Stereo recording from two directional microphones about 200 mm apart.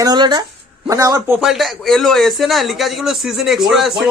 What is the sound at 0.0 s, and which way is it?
A man's voice, 20° right (ahead or behind).